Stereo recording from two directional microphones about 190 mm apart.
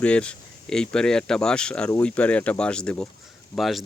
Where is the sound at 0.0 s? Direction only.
5° left (ahead or behind).